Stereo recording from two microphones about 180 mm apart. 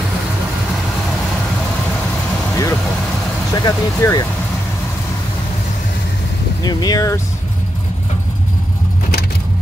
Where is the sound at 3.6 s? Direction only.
20° left (ahead or behind).